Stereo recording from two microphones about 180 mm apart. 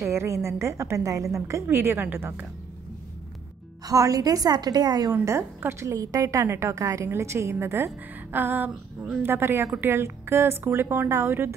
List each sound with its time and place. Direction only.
0.0 s a woman's voice: 15° right (ahead or behind)
3.8 s a woman's voice: 20° right (ahead or behind)